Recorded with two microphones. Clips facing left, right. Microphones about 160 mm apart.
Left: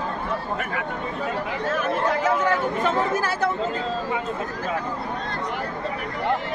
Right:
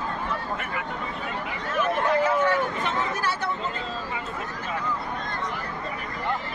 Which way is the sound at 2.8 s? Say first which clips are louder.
Left 5 dB; 45° left (ahead or behind).